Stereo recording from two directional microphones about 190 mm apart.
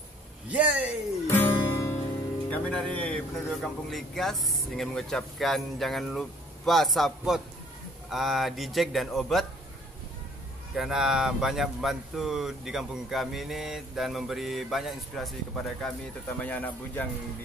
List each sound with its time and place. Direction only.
0.5 s a man's voice: 5° right (ahead or behind)
1.2 s music: 10° left (ahead or behind)
2.5 s speech: 5° left (ahead or behind)
10.8 s speech: centre (ahead or behind)